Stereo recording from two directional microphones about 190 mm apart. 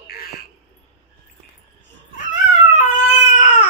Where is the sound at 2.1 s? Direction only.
40° left (ahead or behind).